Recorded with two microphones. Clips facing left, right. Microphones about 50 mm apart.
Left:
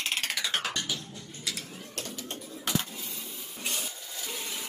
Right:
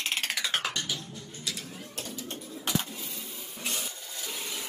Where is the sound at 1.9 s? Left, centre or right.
Left.